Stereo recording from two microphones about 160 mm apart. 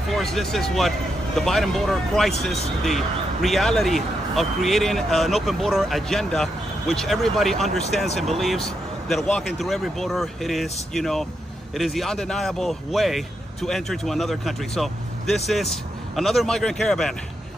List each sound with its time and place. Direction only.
0.1 s speech: centre (ahead or behind)